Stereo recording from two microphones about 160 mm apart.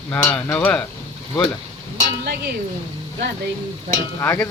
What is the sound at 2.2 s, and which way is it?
Speech, 85° right.